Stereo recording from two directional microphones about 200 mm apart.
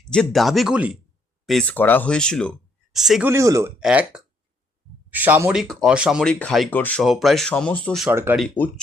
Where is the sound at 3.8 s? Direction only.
5° right (ahead or behind).